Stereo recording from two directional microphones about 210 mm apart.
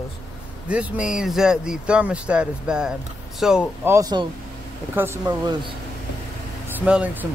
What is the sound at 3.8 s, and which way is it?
Speech, 15° right (ahead or behind).